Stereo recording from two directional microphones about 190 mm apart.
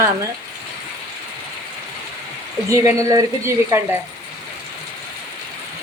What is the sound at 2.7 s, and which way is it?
A woman's voice, 15° right (ahead or behind).